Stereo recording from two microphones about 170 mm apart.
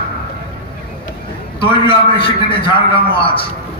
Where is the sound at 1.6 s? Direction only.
30° left (ahead or behind).